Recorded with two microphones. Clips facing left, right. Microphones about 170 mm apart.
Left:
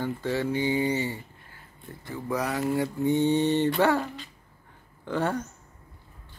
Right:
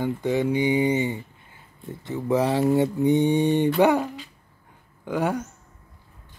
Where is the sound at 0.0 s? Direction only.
15° right (ahead or behind).